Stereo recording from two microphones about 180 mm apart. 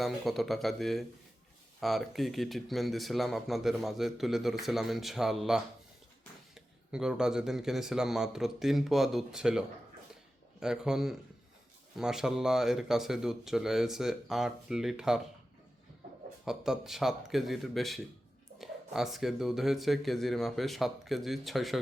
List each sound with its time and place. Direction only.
0.0 s speech: centre (ahead or behind)
16.5 s speech: centre (ahead or behind)